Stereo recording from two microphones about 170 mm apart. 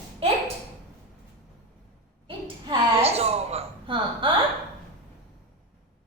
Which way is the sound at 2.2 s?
35° right (ahead or behind).